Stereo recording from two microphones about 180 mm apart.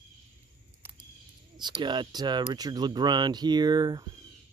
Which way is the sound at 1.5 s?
25° right (ahead or behind).